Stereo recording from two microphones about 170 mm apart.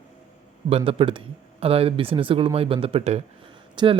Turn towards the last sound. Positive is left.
turn(degrees=-25)  # may be behind; listen again after turning